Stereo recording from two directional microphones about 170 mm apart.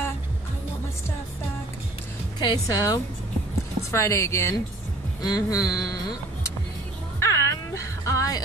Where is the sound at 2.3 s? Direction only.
20° left (ahead or behind).